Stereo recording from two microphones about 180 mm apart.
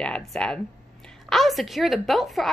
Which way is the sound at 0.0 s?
5° left (ahead or behind).